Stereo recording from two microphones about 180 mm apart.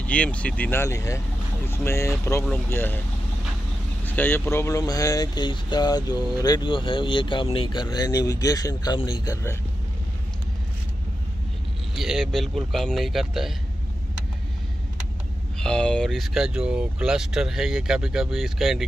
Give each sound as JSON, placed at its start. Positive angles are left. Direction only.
{"t": 0.0, "sound": "speech", "side_deg": 5}
{"t": 4.0, "sound": "speech", "side_deg": 10}
{"t": 11.9, "sound": "speech", "side_deg": 0}
{"t": 15.6, "sound": "speech", "side_deg": 5}